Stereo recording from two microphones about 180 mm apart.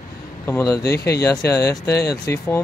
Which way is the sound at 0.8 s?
65° left (ahead or behind).